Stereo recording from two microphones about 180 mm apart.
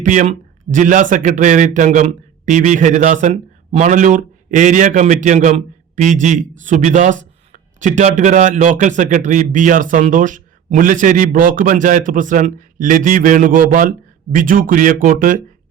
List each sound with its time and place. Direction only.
0.0 s speech: 45° right (ahead or behind)